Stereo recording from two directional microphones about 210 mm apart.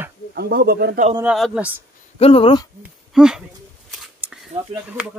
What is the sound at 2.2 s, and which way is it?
Speech, 25° left (ahead or behind).